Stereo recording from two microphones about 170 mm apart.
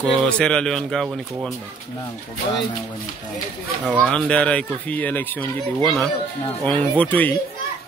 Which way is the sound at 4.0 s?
5° left (ahead or behind).